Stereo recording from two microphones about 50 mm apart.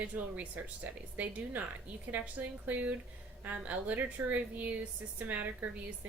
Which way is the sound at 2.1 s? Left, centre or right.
Right.